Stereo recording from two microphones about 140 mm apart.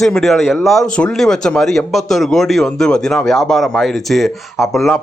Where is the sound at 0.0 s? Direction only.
5° left (ahead or behind).